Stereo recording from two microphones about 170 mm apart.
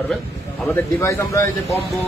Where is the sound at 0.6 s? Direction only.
15° left (ahead or behind).